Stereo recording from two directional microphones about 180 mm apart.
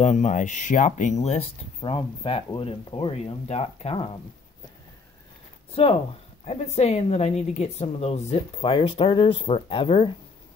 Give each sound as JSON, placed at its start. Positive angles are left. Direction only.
{"t": 0.0, "sound": "speech", "side_deg": 40}
{"t": 5.8, "sound": "speech", "side_deg": 30}